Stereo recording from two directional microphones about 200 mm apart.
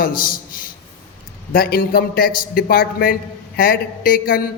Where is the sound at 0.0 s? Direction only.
45° left (ahead or behind).